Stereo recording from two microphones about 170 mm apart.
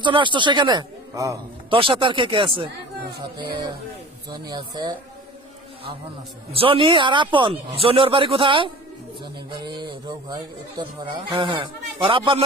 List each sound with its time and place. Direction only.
0.0 s a man's voice: 30° right (ahead or behind)
1.7 s a man's voice: 30° right (ahead or behind)
4.3 s a man's voice: 25° right (ahead or behind)
6.5 s a man's voice: 30° right (ahead or behind)